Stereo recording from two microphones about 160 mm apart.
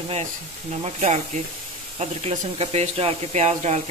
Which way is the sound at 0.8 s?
45° right (ahead or behind).